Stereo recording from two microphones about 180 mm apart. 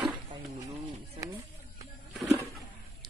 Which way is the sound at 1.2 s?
20° right (ahead or behind).